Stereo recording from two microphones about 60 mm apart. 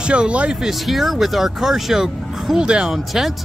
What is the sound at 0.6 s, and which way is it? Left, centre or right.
Speech, centre.